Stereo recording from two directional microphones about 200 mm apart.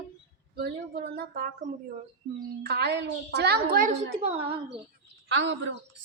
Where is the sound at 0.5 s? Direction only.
50° right (ahead or behind).